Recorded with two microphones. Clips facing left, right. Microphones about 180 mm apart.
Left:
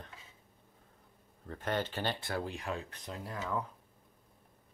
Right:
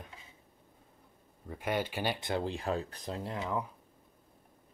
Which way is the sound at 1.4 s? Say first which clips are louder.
Right 1 dB; 10° right (ahead or behind).